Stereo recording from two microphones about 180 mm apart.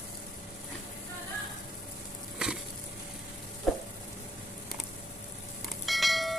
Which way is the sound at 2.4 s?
5° right (ahead or behind).